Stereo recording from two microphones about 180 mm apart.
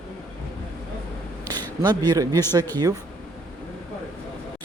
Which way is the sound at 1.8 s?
25° right (ahead or behind).